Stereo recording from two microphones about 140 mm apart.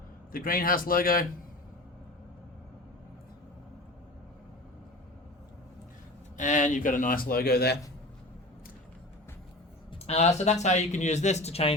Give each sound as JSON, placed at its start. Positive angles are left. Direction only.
{"t": 0.3, "sound": "a man's voice", "side_deg": 90}
{"t": 6.3, "sound": "speech", "side_deg": 65}
{"t": 9.9, "sound": "speech", "side_deg": 50}